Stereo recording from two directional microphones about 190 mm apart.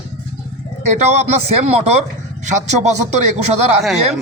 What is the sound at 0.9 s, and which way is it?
Speech, 35° right (ahead or behind).